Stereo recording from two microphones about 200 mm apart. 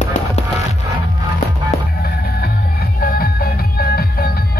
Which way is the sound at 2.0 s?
50° left (ahead or behind).